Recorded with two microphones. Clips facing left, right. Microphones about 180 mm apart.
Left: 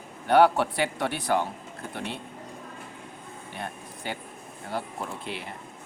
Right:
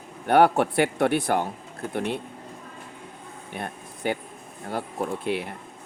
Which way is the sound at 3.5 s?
55° right (ahead or behind).